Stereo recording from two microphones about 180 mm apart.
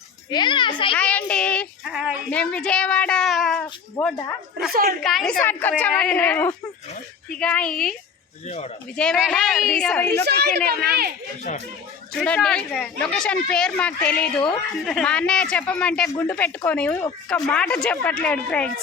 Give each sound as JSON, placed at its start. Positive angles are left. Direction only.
{"t": 0.3, "sound": "a child's voice", "side_deg": 25}
{"t": 0.9, "sound": "a woman's voice", "side_deg": 5}
{"t": 4.7, "sound": "a woman's voice", "side_deg": -55}
{"t": 5.0, "sound": "a woman's voice", "side_deg": 0}
{"t": 8.4, "sound": "speech", "side_deg": 40}
{"t": 9.0, "sound": "speech", "side_deg": 0}
{"t": 10.2, "sound": "a woman's voice", "side_deg": -65}
{"t": 12.1, "sound": "speech", "side_deg": 5}